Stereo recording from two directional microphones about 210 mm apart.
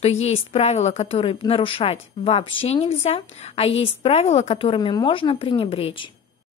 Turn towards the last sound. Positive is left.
turn(degrees=25)  # may be behind; listen again after turning